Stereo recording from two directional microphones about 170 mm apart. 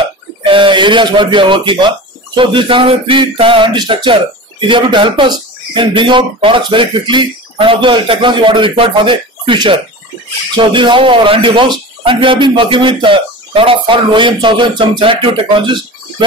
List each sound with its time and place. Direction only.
0.4 s speech: 30° right (ahead or behind)
16.2 s speech: 30° right (ahead or behind)